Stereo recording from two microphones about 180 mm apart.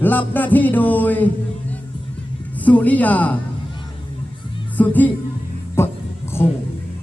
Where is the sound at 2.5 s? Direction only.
10° left (ahead or behind).